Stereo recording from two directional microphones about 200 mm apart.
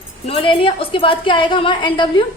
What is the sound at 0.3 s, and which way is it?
A woman's voice, 25° left (ahead or behind).